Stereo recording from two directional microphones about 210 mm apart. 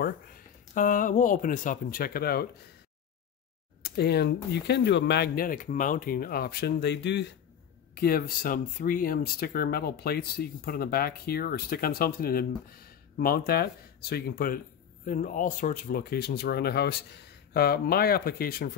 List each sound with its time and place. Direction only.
0.7 s speech: 40° left (ahead or behind)
3.8 s speech: 50° left (ahead or behind)